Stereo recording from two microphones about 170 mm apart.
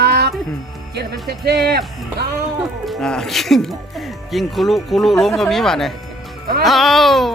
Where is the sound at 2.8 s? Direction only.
Centre (ahead or behind).